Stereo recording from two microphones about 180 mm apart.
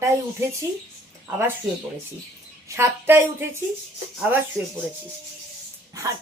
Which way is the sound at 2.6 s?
15° right (ahead or behind).